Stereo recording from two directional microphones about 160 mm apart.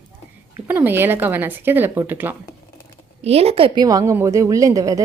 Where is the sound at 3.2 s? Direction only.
40° right (ahead or behind); by 5.0 s 20° right (ahead or behind).